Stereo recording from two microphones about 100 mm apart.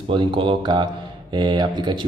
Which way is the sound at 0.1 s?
55° right (ahead or behind).